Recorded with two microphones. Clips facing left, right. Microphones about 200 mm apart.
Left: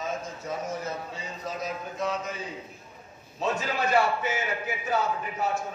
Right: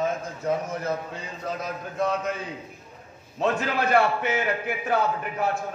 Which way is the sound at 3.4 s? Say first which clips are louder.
Right 4 dB; 60° right (ahead or behind).